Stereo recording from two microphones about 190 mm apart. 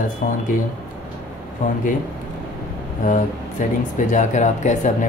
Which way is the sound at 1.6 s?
45° left (ahead or behind).